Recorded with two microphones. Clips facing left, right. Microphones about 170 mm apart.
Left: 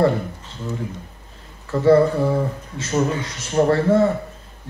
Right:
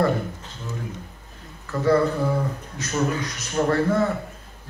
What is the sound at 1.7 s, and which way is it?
A man's voice, 30° left (ahead or behind).